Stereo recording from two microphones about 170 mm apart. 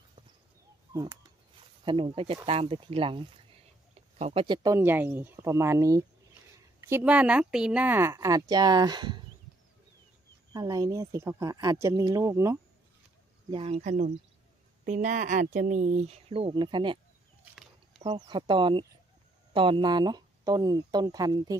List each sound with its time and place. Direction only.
1.9 s speech: 30° right (ahead or behind)
3.9 s a sound: 35° right (ahead or behind)
4.6 s speech: 15° right (ahead or behind)
10.5 s speech: 20° right (ahead or behind)
13.5 s speech: 35° right (ahead or behind)
18.0 s speech: 25° right (ahead or behind)